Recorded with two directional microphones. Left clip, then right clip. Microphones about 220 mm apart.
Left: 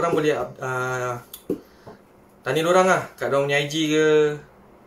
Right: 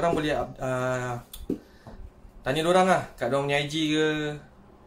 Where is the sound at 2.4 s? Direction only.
15° right (ahead or behind).